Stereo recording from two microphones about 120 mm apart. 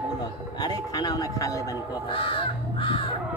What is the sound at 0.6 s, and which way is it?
Speech, 35° left (ahead or behind).